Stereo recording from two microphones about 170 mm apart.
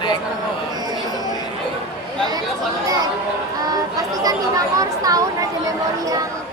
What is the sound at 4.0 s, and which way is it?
Speech, 20° right (ahead or behind).